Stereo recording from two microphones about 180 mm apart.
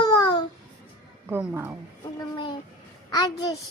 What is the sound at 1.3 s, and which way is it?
Speech, 10° right (ahead or behind).